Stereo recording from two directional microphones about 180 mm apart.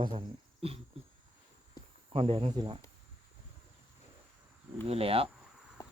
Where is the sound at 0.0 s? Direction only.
25° right (ahead or behind).